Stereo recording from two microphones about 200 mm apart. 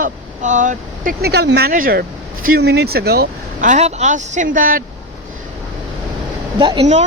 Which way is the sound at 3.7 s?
35° right (ahead or behind).